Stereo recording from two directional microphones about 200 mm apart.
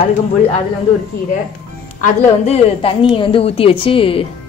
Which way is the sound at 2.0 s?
30° left (ahead or behind).